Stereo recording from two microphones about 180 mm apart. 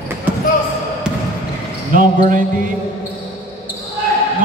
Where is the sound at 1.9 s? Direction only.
50° right (ahead or behind).